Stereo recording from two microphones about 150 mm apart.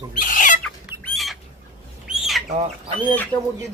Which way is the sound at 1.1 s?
Centre (ahead or behind).